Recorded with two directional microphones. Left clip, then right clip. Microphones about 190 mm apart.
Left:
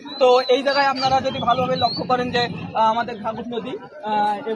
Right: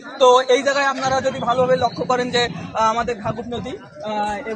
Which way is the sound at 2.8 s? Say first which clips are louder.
Even; 45° right (ahead or behind).